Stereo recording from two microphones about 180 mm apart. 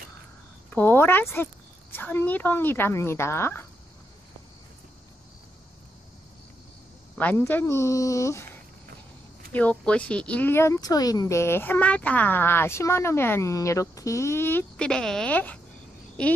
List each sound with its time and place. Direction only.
0.7 s a woman's voice: 10° left (ahead or behind)
7.2 s speech: 10° left (ahead or behind)
9.5 s speech: 10° left (ahead or behind)